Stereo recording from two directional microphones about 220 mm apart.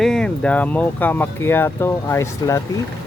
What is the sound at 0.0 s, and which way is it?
Speech, 5° left (ahead or behind).